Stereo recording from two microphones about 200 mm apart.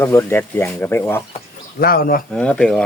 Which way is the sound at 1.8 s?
45° left (ahead or behind).